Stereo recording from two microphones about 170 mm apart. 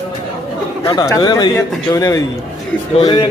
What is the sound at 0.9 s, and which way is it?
A man's voice, 20° left (ahead or behind).